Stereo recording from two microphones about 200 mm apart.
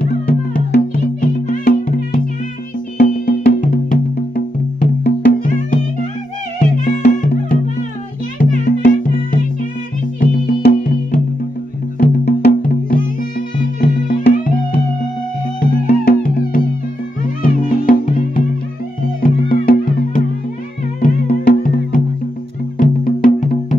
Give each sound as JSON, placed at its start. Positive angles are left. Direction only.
{"t": 0.0, "sound": "music", "side_deg": 50}
{"t": 21.0, "sound": "music", "side_deg": 45}